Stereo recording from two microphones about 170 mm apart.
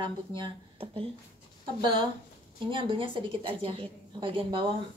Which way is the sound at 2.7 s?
30° right (ahead or behind).